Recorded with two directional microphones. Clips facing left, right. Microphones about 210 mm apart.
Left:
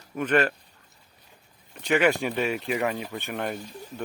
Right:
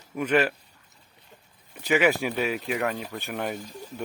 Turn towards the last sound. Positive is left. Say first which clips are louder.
# even
turn(degrees=-5)  # may be behind; listen again after turning